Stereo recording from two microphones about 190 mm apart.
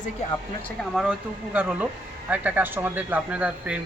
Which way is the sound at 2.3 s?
10° right (ahead or behind).